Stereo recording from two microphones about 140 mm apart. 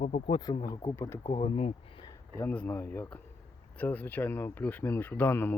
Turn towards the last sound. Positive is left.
turn(degrees=15)  # may be behind; listen again after turning